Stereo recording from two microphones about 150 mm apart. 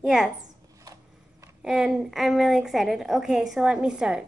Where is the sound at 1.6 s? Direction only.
5° right (ahead or behind).